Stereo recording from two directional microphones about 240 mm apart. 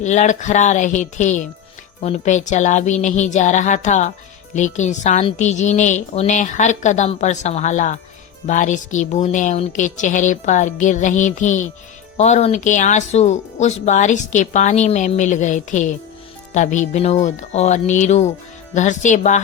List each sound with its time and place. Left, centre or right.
0.0 s a woman's voice: left